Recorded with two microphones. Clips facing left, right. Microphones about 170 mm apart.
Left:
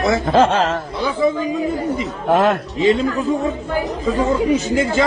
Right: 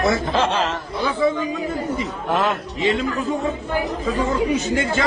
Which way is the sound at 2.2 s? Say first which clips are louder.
Left 7 dB; 50° left (ahead or behind).